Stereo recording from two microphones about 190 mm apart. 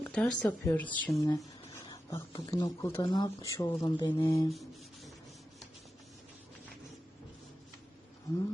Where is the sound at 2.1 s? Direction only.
15° left (ahead or behind).